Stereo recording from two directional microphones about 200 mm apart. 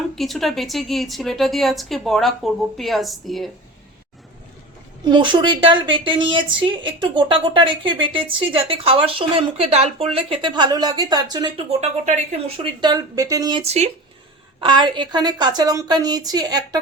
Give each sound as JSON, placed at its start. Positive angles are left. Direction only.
{"t": 0.2, "sound": "a woman's voice", "side_deg": 0}
{"t": 5.0, "sound": "a woman's voice", "side_deg": -25}
{"t": 12.6, "sound": "a woman's voice", "side_deg": -20}